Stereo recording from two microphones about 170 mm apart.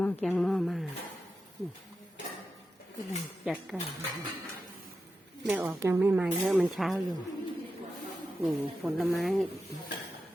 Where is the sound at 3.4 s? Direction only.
Centre (ahead or behind).